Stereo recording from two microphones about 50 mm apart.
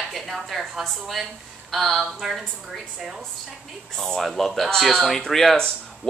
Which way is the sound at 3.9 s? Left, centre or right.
Centre.